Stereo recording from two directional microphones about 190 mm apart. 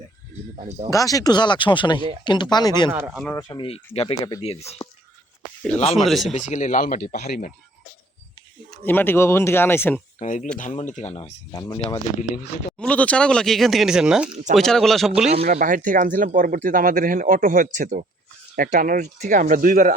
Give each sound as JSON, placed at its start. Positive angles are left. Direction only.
{"t": 0.5, "sound": "speech", "side_deg": -40}
{"t": 0.9, "sound": "speech", "side_deg": 20}
{"t": 2.9, "sound": "speech", "side_deg": -10}
{"t": 3.3, "sound": "speech", "side_deg": 25}
{"t": 6.1, "sound": "speech", "side_deg": 0}
{"t": 6.3, "sound": "speech", "side_deg": 40}
{"t": 8.9, "sound": "speech", "side_deg": 10}
{"t": 10.2, "sound": "speech", "side_deg": 40}
{"t": 11.5, "sound": "speech", "side_deg": 20}
{"t": 12.8, "sound": "speech", "side_deg": 5}
{"t": 15.4, "sound": "speech", "side_deg": -45}